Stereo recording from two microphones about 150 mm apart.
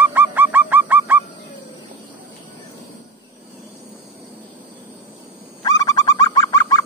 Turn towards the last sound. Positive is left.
turn(degrees=25)  # may be behind; listen again after turning